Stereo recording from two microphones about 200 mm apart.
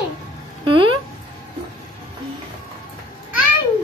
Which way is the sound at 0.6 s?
25° right (ahead or behind).